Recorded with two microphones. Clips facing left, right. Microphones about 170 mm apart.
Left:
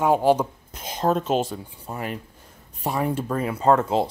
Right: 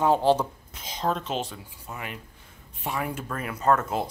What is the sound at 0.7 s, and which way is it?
Speech, 50° left (ahead or behind).